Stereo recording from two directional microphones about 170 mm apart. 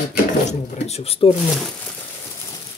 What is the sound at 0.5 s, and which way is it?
Speech, 40° left (ahead or behind).